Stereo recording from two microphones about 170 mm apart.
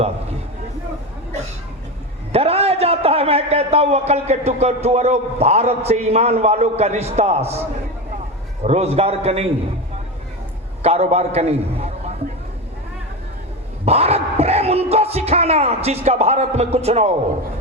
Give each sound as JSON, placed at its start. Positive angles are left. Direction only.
{"t": 2.3, "sound": "a man's voice", "side_deg": -35}
{"t": 8.6, "sound": "a man's voice", "side_deg": -40}
{"t": 10.8, "sound": "a man's voice", "side_deg": -40}
{"t": 13.8, "sound": "a sound", "side_deg": -40}